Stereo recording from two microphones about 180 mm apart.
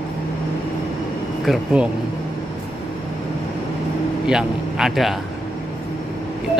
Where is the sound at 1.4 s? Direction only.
5° right (ahead or behind).